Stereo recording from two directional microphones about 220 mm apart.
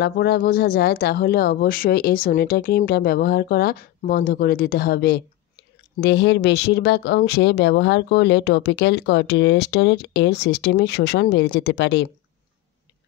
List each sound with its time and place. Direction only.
0.0 s speech: 45° left (ahead or behind)